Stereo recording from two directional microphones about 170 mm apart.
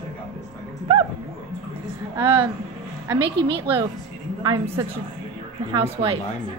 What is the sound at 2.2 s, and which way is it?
A woman's voice, 30° right (ahead or behind).